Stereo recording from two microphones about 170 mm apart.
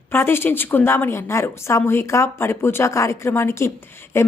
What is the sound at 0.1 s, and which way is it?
Speech, 15° left (ahead or behind).